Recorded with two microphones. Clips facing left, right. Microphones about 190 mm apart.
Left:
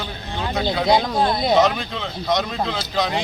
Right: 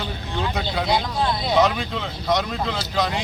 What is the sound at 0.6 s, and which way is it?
Speech, 45° left (ahead or behind).